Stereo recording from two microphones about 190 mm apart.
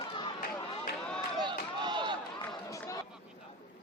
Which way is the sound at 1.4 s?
25° right (ahead or behind).